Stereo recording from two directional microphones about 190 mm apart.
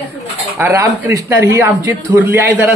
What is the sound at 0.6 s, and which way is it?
A man's voice, 10° right (ahead or behind).